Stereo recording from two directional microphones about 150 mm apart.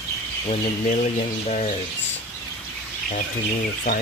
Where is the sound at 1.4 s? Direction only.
50° left (ahead or behind).